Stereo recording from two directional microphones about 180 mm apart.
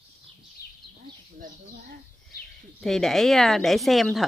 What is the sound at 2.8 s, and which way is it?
Speech, centre (ahead or behind).